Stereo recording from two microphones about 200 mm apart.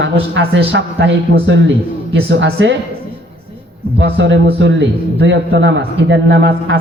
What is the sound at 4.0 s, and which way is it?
A man's voice, 65° right (ahead or behind).